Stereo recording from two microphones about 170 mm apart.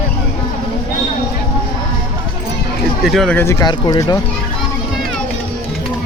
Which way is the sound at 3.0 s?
Centre (ahead or behind).